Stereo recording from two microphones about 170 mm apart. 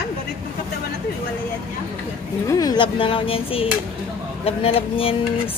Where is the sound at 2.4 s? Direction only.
20° left (ahead or behind).